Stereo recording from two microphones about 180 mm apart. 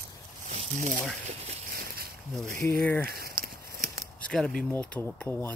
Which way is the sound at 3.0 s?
60° right (ahead or behind).